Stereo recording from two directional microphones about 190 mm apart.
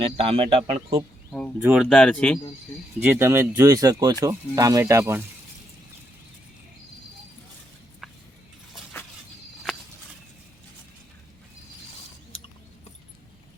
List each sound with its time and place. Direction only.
0.0 s a man's voice: 30° right (ahead or behind)
1.3 s speech: 5° left (ahead or behind)
3.0 s speech: 10° right (ahead or behind)